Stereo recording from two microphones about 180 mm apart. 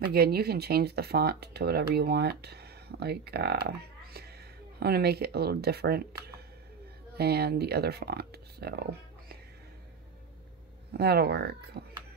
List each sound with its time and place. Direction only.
0.0 s speech: 60° right (ahead or behind)
10.9 s speech: 60° right (ahead or behind)